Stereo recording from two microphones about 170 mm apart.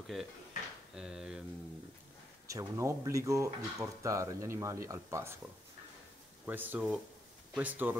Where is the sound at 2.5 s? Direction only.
20° right (ahead or behind).